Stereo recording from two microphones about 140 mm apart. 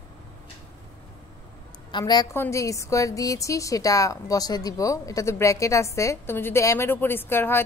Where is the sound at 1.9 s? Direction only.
30° left (ahead or behind).